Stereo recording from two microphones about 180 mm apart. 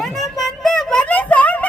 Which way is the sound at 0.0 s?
Centre (ahead or behind).